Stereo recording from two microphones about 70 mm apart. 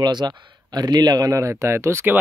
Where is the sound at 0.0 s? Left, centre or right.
Right.